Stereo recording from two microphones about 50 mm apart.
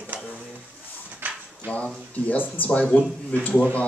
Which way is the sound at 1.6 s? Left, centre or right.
Left.